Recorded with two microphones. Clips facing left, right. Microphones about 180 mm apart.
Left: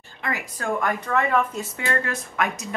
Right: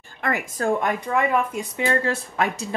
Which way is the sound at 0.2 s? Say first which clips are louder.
Right 5 dB; 50° right (ahead or behind).